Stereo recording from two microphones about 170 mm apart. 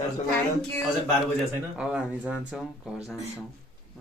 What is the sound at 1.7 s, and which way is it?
Speech, 5° right (ahead or behind).